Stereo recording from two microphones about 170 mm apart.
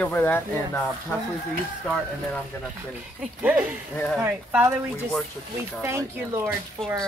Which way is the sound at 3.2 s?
10° right (ahead or behind).